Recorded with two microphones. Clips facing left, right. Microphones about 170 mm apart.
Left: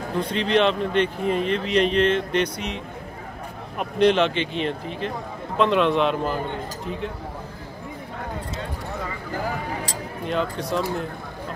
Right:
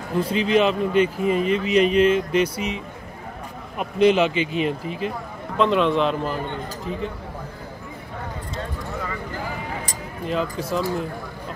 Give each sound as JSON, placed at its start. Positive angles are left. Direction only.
{"t": 0.2, "sound": "speech", "side_deg": -5}
{"t": 10.2, "sound": "speech", "side_deg": 0}